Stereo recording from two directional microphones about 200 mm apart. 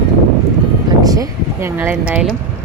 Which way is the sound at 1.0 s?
20° right (ahead or behind).